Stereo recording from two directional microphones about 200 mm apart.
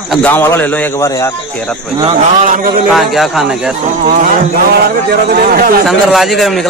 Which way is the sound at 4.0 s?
40° right (ahead or behind).